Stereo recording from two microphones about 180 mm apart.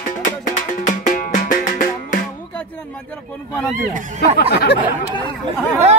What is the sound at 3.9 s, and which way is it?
Speech, 45° right (ahead or behind).